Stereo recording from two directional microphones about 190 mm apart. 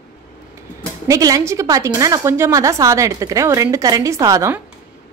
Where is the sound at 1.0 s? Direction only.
20° right (ahead or behind).